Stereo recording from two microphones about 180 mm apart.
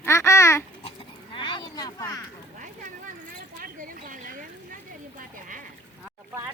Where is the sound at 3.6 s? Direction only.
50° right (ahead or behind).